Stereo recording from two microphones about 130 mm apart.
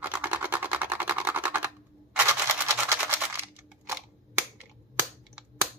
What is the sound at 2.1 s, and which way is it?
Camera, 20° right (ahead or behind).